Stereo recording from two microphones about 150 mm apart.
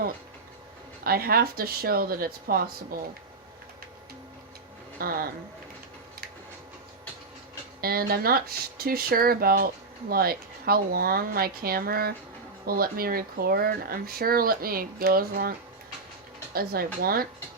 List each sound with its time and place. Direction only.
1.0 s speech: 90° right
4.9 s speech: 80° right
7.8 s speech: 90° right
12.6 s speech: 80° right
16.6 s speech: 85° right